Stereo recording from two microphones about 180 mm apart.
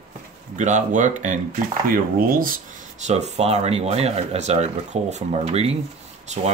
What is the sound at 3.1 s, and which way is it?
Speech, 35° right (ahead or behind).